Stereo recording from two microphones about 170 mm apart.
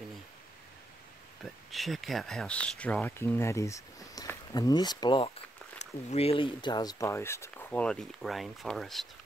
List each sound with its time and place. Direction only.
1.4 s speech: centre (ahead or behind); by 5.3 s 25° left (ahead or behind)
5.8 s speech: 40° left (ahead or behind); by 9.0 s centre (ahead or behind)